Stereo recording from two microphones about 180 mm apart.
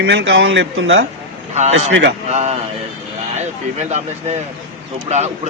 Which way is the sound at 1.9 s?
75° right (ahead or behind).